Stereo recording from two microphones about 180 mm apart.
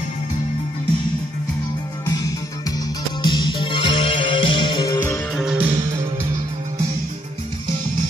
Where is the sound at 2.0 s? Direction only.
20° left (ahead or behind); by 5.6 s centre (ahead or behind).